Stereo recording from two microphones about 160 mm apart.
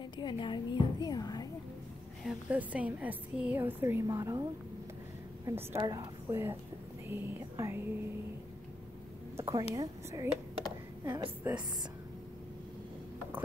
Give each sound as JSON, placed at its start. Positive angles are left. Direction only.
{"t": 0.2, "sound": "a woman's voice", "side_deg": 30}
{"t": 2.2, "sound": "a woman's voice", "side_deg": -10}
{"t": 9.4, "sound": "a woman's voice", "side_deg": -20}